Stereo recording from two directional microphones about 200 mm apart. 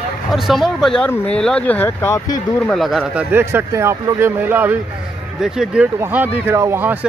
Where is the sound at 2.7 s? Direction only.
Centre (ahead or behind).